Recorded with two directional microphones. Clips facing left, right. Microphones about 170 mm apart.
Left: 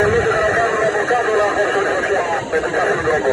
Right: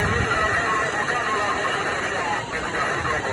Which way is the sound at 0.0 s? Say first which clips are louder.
Left 11 dB; 70° left (ahead or behind).